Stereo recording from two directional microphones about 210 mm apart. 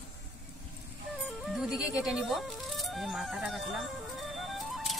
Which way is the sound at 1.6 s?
5° right (ahead or behind).